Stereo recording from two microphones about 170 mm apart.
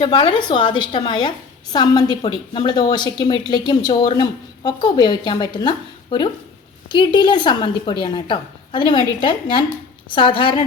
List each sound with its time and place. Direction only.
0.0 s a woman's voice: 30° left (ahead or behind)